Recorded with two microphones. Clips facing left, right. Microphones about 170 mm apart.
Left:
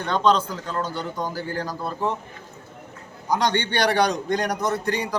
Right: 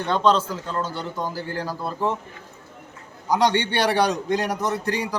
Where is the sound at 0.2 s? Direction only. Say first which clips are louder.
Even; centre (ahead or behind).